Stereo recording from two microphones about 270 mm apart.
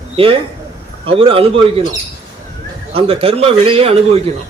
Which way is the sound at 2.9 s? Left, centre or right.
Right.